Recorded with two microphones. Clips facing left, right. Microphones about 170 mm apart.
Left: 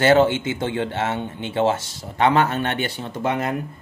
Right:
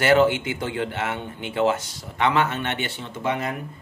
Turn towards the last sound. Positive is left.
turn(degrees=50)  # may be behind; listen again after turning